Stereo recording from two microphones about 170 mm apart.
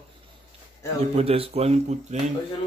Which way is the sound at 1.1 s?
35° right (ahead or behind).